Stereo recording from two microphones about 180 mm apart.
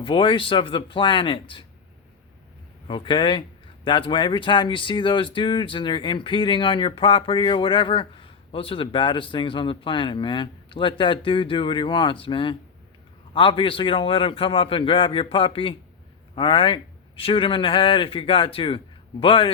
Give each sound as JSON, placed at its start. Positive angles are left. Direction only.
{"t": 0.0, "sound": "speech", "side_deg": 30}
{"t": 2.8, "sound": "speech", "side_deg": 30}